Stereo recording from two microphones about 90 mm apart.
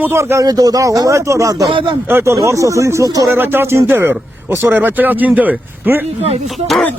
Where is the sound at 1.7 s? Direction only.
70° right (ahead or behind).